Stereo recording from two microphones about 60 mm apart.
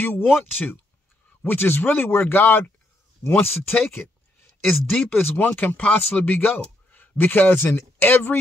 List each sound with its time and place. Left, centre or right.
0.3 s speech: left
4.7 s speech: centre
5.1 s speech: left